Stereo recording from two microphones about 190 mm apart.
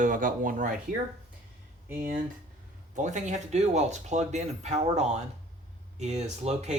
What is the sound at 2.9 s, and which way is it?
Speech, 40° right (ahead or behind).